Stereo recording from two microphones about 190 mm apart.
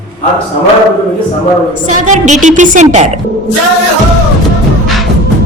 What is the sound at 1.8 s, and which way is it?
A woman's voice, 40° right (ahead or behind).